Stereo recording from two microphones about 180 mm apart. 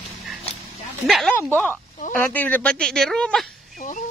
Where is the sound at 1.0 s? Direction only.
Centre (ahead or behind).